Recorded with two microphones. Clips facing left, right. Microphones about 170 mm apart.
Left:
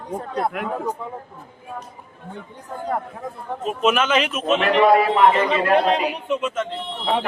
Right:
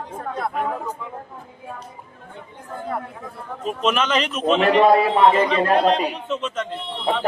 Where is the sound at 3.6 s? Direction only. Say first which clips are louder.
Left 2 dB; 5° left (ahead or behind).